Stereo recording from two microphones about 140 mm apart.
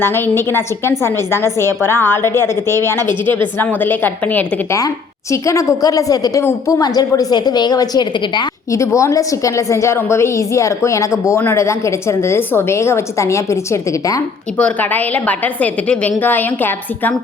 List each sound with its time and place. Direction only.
0.0 s a woman's voice: 15° left (ahead or behind)
14.6 s a woman's voice: 10° left (ahead or behind)